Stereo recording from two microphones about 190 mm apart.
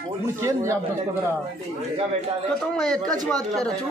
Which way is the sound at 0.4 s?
15° right (ahead or behind).